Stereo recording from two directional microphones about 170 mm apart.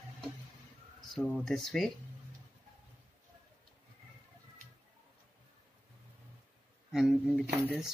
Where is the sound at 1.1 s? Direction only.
Centre (ahead or behind).